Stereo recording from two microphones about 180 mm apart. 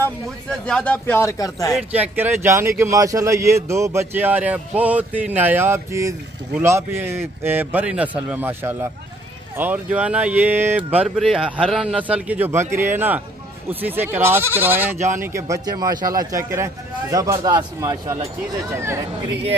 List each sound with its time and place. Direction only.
0.0 s speech: 5° left (ahead or behind)
1.9 s a man's voice: 10° right (ahead or behind)